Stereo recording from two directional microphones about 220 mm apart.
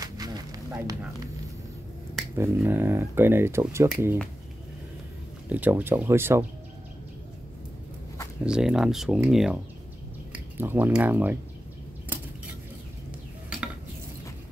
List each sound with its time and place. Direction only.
0.0 s a sound: 15° right (ahead or behind)
2.3 s speech: 10° right (ahead or behind)
5.5 s speech: 5° right (ahead or behind)
8.5 s speech: 5° right (ahead or behind)